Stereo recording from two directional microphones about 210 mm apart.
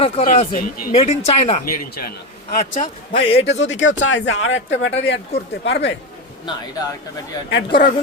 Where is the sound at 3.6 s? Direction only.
60° left (ahead or behind).